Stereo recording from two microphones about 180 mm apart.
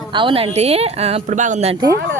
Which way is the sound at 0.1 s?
30° right (ahead or behind).